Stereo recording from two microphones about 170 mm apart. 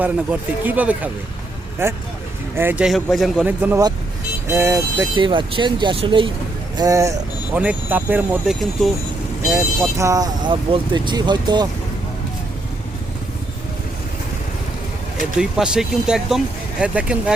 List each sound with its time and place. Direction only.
0.0 s speech: 10° right (ahead or behind)
5.1 s speech: 30° right (ahead or behind)
6.7 s speech: 20° right (ahead or behind)
7.5 s speech: 10° right (ahead or behind); by 11.7 s 25° right (ahead or behind)
15.4 s speech: 5° right (ahead or behind)